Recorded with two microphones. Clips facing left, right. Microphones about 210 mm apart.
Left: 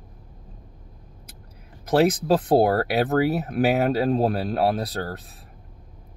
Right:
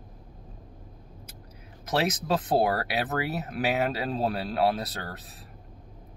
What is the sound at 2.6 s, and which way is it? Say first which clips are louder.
Speech: left 6 dB; 55° left (ahead or behind).